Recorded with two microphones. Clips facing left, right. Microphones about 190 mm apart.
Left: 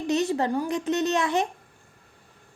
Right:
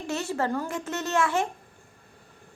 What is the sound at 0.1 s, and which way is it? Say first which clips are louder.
Speech: left 4 dB; 20° left (ahead or behind).